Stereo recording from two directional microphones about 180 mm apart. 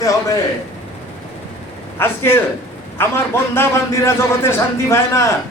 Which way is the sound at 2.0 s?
10° left (ahead or behind).